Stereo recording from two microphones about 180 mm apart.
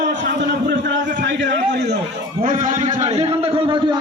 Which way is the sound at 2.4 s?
45° right (ahead or behind).